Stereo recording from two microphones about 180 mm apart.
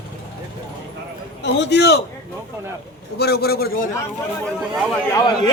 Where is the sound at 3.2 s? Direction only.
60° left (ahead or behind).